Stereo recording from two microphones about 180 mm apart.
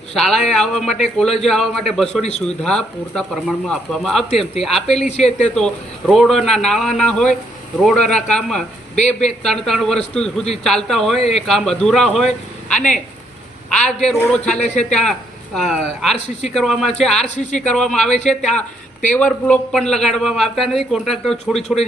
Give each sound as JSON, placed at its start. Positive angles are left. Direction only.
{"t": 0.1, "sound": "a man's voice", "side_deg": 0}
{"t": 11.2, "sound": "speech", "side_deg": 35}
{"t": 11.4, "sound": "a man's voice", "side_deg": 0}